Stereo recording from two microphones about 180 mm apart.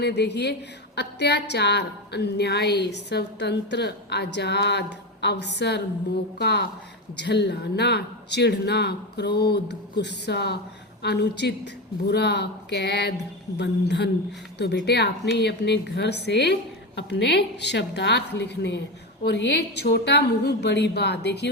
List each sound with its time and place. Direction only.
0.0 s a woman's voice: 70° left (ahead or behind)